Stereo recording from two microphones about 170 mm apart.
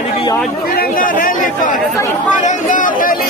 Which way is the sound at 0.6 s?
60° left (ahead or behind).